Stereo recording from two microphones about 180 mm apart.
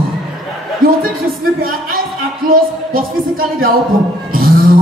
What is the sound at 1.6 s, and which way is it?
Speech, 55° right (ahead or behind).